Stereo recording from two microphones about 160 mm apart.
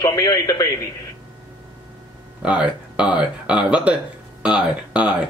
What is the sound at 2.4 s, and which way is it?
Speech, 5° right (ahead or behind).